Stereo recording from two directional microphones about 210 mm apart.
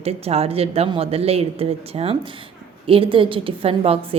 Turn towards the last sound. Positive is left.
turn(degrees=-25)  # may be behind; listen again after turning